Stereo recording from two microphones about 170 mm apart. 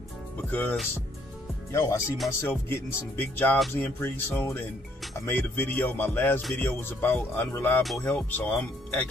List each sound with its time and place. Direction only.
0.5 s speech: 10° left (ahead or behind)
1.7 s speech: 20° left (ahead or behind)